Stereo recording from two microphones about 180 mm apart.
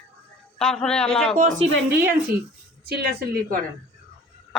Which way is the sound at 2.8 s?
60° right (ahead or behind).